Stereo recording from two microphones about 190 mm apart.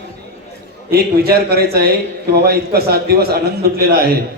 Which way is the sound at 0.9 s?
55° right (ahead or behind).